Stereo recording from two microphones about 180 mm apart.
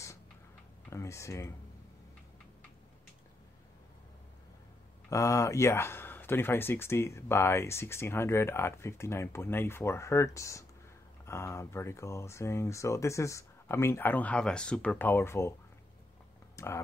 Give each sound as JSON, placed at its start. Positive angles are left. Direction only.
{"t": 0.8, "sound": "computer keyboard", "side_deg": 15}
{"t": 5.1, "sound": "speech", "side_deg": 15}
{"t": 16.5, "sound": "speech", "side_deg": 15}